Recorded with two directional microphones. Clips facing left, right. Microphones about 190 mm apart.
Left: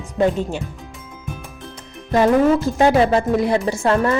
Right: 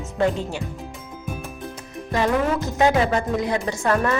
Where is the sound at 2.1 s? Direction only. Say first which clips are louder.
Left 7 dB; 30° left (ahead or behind).